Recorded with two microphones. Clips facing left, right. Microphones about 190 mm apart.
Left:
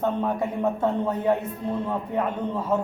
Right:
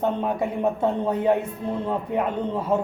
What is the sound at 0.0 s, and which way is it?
A man's voice, 15° right (ahead or behind).